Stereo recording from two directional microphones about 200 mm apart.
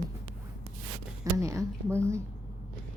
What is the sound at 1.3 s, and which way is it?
Speech, 15° right (ahead or behind).